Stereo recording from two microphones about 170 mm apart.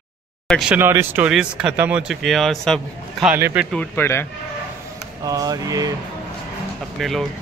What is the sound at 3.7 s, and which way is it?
Speech, 15° left (ahead or behind).